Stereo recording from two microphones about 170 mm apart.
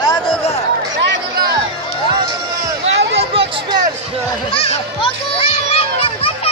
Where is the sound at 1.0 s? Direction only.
90° right.